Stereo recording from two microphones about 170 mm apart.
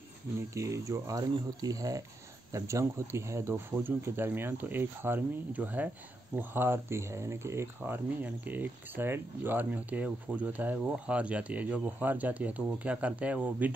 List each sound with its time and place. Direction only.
0.6 s speech: 20° right (ahead or behind)